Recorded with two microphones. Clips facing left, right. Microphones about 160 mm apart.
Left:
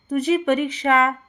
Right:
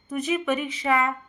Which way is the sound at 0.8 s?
75° left (ahead or behind).